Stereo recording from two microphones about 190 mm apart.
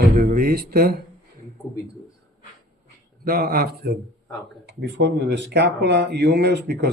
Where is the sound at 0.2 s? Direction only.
50° right (ahead or behind).